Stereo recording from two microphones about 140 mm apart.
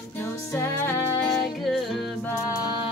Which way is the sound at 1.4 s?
Centre (ahead or behind).